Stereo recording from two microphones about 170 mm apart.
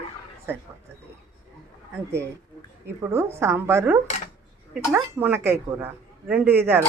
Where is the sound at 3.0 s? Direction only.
15° right (ahead or behind).